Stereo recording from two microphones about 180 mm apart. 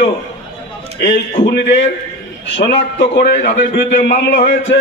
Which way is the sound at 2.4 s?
80° left.